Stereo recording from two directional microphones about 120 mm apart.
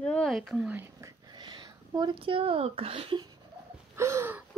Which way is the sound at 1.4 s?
40° right (ahead or behind).